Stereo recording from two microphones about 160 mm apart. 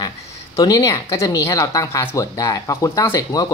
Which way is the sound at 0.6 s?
20° left (ahead or behind).